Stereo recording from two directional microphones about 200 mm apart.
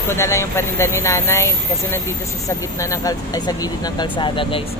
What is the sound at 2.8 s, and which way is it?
Speech, 15° left (ahead or behind).